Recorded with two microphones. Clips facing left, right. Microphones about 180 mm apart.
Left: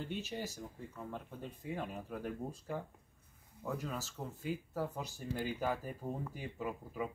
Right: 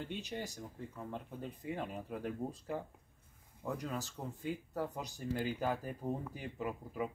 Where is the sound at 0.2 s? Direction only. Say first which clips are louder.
Left 1 dB; 5° left (ahead or behind).